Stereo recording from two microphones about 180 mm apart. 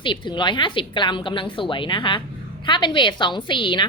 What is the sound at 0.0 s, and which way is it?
A woman's voice, 25° left (ahead or behind).